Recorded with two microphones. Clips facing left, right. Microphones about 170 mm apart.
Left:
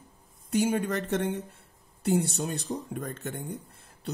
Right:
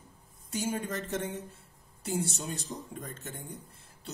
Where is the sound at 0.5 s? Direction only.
65° left (ahead or behind).